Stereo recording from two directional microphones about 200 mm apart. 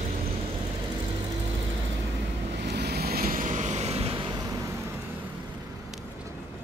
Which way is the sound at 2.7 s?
55° right (ahead or behind).